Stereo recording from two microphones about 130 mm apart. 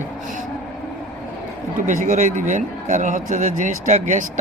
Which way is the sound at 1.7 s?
90° right.